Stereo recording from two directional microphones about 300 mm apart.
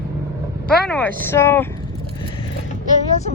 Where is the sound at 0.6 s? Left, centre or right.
Centre.